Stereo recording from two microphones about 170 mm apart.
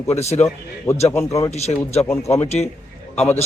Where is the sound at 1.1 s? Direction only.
15° left (ahead or behind).